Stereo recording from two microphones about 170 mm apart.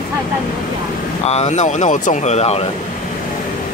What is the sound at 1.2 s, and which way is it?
Speech, 40° left (ahead or behind).